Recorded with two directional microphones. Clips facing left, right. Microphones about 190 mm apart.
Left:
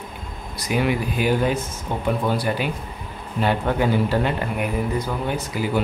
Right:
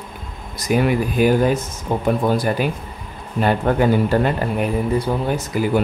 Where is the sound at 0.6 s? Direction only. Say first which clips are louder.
Right 4 dB; 45° right (ahead or behind).